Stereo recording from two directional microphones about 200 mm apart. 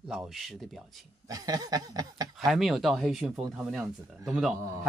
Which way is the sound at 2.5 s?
Centre (ahead or behind).